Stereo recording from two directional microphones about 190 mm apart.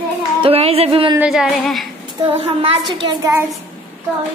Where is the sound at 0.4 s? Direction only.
30° right (ahead or behind).